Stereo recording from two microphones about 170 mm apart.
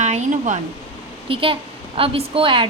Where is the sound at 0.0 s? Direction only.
45° right (ahead or behind).